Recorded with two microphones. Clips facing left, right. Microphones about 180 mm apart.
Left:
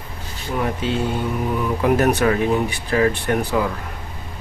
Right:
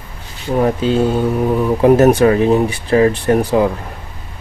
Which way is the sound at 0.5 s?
35° right (ahead or behind).